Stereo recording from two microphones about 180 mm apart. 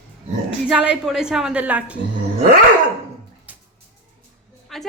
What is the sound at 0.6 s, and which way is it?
A woman's voice, 5° right (ahead or behind).